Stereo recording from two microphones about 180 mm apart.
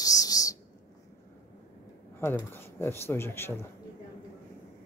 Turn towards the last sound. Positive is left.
turn(degrees=15)  # may be behind; listen again after turning